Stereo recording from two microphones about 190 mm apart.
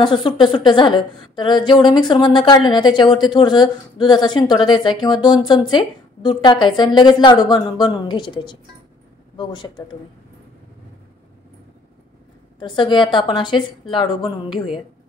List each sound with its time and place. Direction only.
0.0 s a woman's voice: 25° left (ahead or behind)
12.5 s a woman's voice: 25° left (ahead or behind)